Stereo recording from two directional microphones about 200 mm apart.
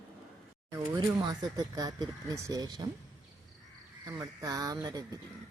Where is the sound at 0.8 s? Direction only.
20° right (ahead or behind).